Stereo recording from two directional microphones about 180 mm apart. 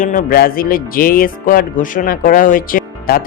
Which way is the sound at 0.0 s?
50° left (ahead or behind).